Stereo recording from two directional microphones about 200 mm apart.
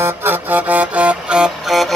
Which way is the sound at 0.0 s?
10° right (ahead or behind).